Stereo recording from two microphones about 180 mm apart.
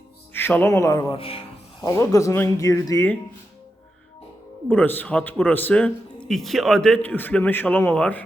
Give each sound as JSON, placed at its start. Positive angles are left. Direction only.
{"t": 0.3, "sound": "a man's voice", "side_deg": 10}
{"t": 1.1, "sound": "music", "side_deg": 30}
{"t": 1.9, "sound": "speech", "side_deg": 15}
{"t": 4.7, "sound": "speech", "side_deg": 10}